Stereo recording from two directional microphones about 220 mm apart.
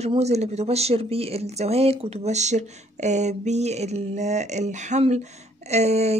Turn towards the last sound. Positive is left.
turn(degrees=-30)  # may be behind; listen again after turning